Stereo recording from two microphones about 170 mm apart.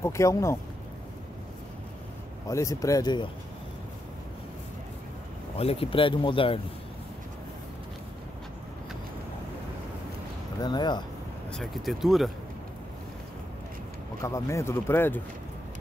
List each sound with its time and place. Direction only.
0.0 s speech: 15° left (ahead or behind)
2.4 s speech: 20° left (ahead or behind)
5.6 s speech: 35° left (ahead or behind)
10.6 s speech: 25° left (ahead or behind)
11.5 s speech: centre (ahead or behind)
14.2 s speech: 15° left (ahead or behind)